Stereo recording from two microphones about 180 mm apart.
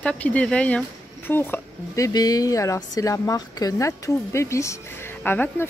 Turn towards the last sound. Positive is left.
turn(degrees=10)  # may be behind; listen again after turning